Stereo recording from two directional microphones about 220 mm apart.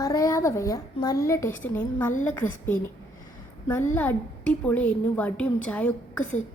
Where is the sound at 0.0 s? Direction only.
15° left (ahead or behind).